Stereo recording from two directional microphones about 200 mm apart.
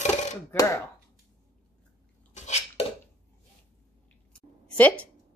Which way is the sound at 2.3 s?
35° left (ahead or behind).